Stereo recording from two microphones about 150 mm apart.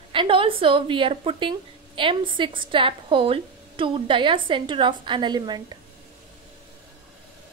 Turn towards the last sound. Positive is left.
turn(degrees=-30)  # may be behind; listen again after turning